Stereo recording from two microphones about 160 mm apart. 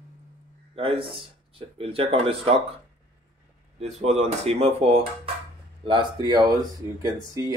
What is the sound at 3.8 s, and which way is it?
Speech, 40° right (ahead or behind).